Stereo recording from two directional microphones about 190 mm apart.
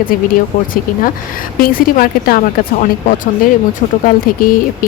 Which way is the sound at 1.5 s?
50° left (ahead or behind).